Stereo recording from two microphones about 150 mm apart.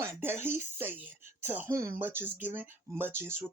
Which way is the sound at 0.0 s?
15° right (ahead or behind).